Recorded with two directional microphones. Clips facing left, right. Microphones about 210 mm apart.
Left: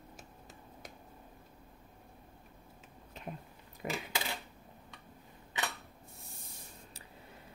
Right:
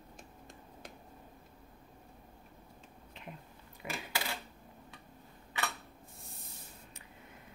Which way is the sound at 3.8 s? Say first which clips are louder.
Left 4 dB; 45° left (ahead or behind).